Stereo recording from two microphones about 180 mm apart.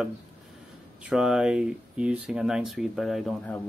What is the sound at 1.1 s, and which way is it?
Speech, 5° right (ahead or behind).